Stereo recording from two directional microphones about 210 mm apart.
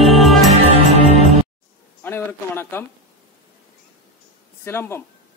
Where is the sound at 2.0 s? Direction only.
10° left (ahead or behind).